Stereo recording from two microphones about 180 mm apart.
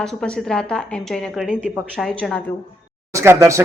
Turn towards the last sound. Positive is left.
turn(degrees=-15)  # may be behind; listen again after turning